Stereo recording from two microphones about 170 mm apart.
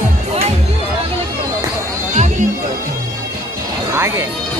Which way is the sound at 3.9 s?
15° right (ahead or behind).